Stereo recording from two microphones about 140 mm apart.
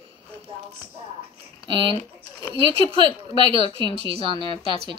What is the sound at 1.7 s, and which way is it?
A woman's voice, 35° right (ahead or behind).